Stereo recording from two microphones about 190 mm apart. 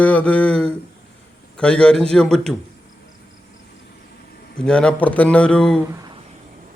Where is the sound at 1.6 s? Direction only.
5° left (ahead or behind).